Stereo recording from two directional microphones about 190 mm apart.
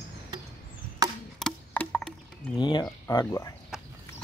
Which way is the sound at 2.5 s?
25° left (ahead or behind).